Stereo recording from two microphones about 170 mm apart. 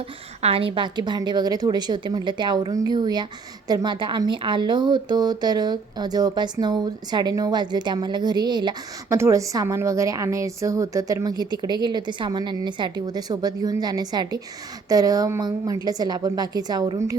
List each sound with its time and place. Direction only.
0.4 s speech: 35° right (ahead or behind)